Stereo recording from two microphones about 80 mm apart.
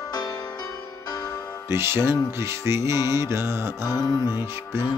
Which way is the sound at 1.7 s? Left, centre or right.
Right.